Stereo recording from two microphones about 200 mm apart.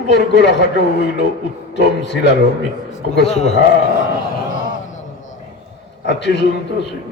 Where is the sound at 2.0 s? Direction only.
60° left (ahead or behind).